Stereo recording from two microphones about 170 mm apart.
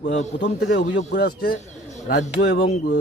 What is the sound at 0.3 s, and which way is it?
Speech, 85° left.